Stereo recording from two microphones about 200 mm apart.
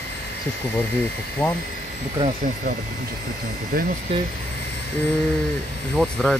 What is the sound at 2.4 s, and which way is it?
Speech, 40° right (ahead or behind).